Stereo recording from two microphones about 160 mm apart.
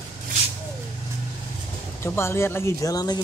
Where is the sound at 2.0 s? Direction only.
15° left (ahead or behind).